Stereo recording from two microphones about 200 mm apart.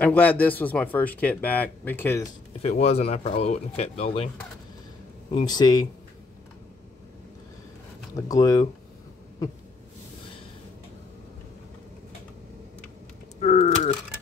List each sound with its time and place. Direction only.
0.0 s speech: 10° left (ahead or behind)
2.6 s speech: 30° left (ahead or behind)
5.3 s speech: 20° left (ahead or behind)
8.3 s speech: 15° left (ahead or behind)
13.4 s speech: 35° left (ahead or behind)